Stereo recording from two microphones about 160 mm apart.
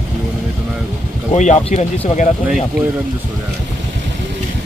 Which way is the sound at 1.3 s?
45° left (ahead or behind).